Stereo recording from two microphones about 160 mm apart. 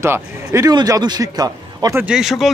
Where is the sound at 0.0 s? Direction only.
15° right (ahead or behind).